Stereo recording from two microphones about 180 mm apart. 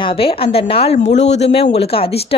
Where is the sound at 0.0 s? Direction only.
30° left (ahead or behind).